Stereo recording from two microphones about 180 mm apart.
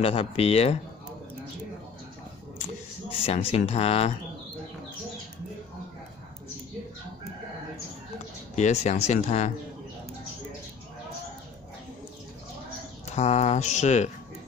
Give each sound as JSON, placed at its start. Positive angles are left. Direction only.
{"t": 0.0, "sound": "speech", "side_deg": 30}
{"t": 3.1, "sound": "speech", "side_deg": 30}
{"t": 8.5, "sound": "speech", "side_deg": 40}
{"t": 13.1, "sound": "speech", "side_deg": 40}